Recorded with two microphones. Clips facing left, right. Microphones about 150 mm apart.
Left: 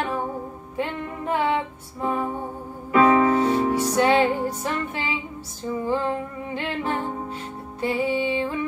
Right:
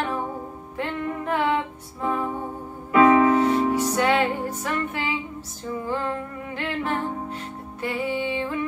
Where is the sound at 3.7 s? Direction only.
30° left (ahead or behind).